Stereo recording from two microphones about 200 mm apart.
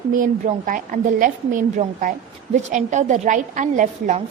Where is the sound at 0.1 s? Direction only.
40° right (ahead or behind).